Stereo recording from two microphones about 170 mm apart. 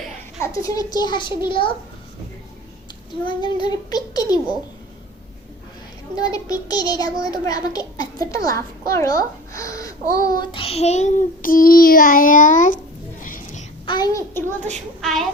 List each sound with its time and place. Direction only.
0.4 s a child's voice: 20° left (ahead or behind)
3.2 s a child's voice: 25° left (ahead or behind)
6.1 s a child's voice: 20° left (ahead or behind)
10.2 s child singing: 20° left (ahead or behind); by 13.7 s 50° left (ahead or behind)
13.8 s a child's voice: 25° left (ahead or behind)
15.0 s speech: centre (ahead or behind)